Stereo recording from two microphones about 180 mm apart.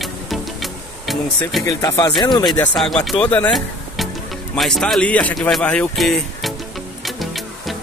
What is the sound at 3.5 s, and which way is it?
Music, centre (ahead or behind).